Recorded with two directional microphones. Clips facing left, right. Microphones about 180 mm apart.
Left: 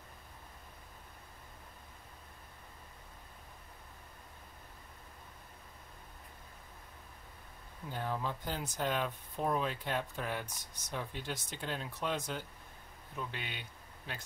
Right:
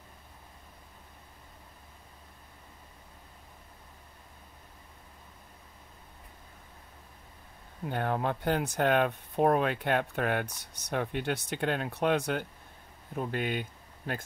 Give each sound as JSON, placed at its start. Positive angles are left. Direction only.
{"t": 7.8, "sound": "speech", "side_deg": -65}
{"t": 13.1, "sound": "speech", "side_deg": -50}